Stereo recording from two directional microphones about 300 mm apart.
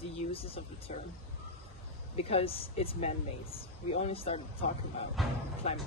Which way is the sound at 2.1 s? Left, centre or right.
Centre.